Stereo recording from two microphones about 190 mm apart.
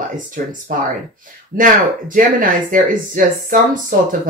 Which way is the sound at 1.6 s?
45° right (ahead or behind).